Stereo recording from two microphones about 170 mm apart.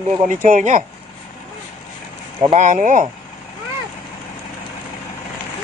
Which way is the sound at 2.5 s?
45° right (ahead or behind).